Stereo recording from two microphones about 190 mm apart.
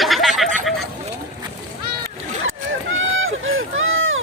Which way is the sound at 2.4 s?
90° right.